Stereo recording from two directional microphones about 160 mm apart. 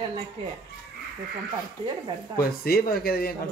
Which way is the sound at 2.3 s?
70° left (ahead or behind).